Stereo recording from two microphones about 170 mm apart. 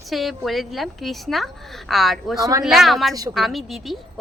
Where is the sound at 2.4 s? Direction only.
20° right (ahead or behind).